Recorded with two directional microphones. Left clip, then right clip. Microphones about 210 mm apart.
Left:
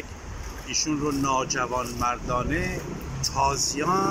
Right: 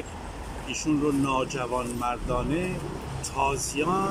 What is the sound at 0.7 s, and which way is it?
Speech, 15° right (ahead or behind).